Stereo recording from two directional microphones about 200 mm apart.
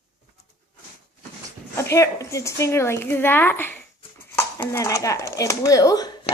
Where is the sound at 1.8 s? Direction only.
15° left (ahead or behind).